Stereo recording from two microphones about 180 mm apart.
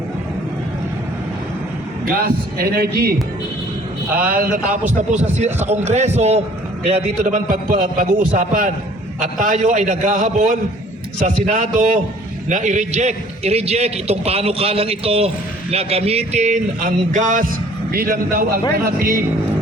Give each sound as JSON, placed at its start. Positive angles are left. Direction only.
{"t": 2.0, "sound": "a man's voice", "side_deg": -55}
{"t": 4.2, "sound": "a man's voice", "side_deg": -55}
{"t": 5.6, "sound": "a man's voice", "side_deg": -40}